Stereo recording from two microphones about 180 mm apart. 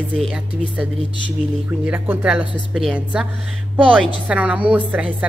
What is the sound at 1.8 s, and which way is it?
Speech, 10° right (ahead or behind).